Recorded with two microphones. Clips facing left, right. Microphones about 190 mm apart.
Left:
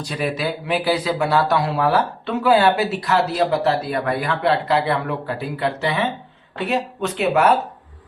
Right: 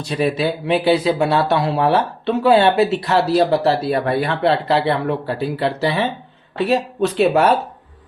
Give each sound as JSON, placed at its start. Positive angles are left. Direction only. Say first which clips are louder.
{"t": 0.0, "sound": "speech", "louder": "right 5 dB", "side_deg": -25}